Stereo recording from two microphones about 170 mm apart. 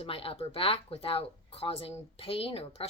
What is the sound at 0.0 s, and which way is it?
A woman's voice, 35° left (ahead or behind).